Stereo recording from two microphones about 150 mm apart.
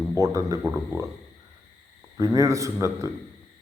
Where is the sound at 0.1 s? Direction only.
20° right (ahead or behind).